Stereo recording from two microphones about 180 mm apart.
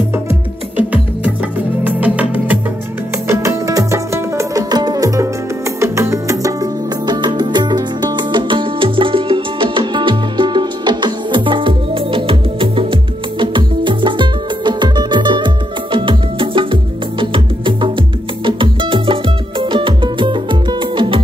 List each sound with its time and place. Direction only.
0.1 s music: 10° right (ahead or behind); by 21.2 s 25° right (ahead or behind)